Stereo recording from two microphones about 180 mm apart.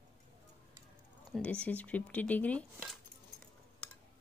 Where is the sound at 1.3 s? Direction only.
5° left (ahead or behind).